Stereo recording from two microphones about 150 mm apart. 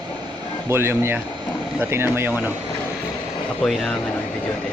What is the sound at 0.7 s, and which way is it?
Speech, 15° right (ahead or behind).